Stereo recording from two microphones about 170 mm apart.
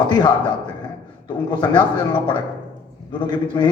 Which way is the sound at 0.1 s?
25° left (ahead or behind).